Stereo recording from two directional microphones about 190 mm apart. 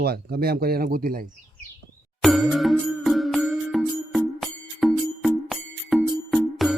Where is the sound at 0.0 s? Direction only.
55° right (ahead or behind).